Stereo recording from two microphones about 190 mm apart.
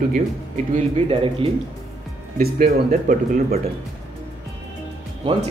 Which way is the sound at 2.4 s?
50° right (ahead or behind).